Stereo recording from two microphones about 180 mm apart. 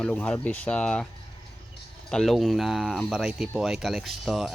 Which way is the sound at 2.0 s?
Centre (ahead or behind).